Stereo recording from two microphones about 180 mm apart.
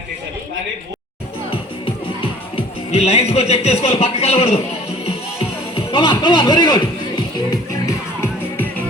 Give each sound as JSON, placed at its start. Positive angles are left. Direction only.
{"t": 2.6, "sound": "speech", "side_deg": 35}
{"t": 5.7, "sound": "music", "side_deg": 25}